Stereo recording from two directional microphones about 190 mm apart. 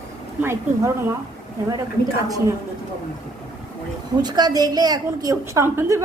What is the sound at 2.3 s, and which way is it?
Speech, 20° right (ahead or behind).